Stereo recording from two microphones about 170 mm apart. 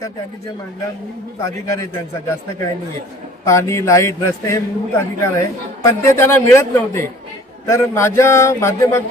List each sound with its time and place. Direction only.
1.5 s a man's voice: 15° left (ahead or behind)